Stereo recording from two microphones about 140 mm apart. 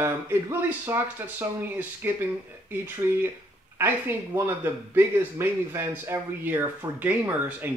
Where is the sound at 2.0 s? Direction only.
15° right (ahead or behind).